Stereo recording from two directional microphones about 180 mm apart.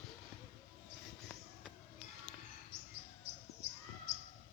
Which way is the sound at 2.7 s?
35° right (ahead or behind).